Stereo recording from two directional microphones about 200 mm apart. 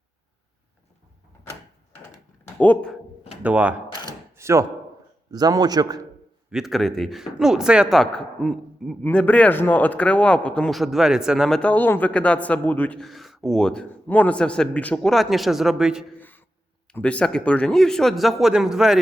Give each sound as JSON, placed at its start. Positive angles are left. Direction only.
{"t": 2.6, "sound": "speech", "side_deg": 5}
{"t": 3.4, "sound": "speech", "side_deg": -5}
{"t": 4.4, "sound": "a sound", "side_deg": -15}
{"t": 5.3, "sound": "a man's voice", "side_deg": -20}
{"t": 6.5, "sound": "a man's voice", "side_deg": 0}
{"t": 16.1, "sound": "a sound", "side_deg": 10}
{"t": 16.9, "sound": "a man's voice", "side_deg": 5}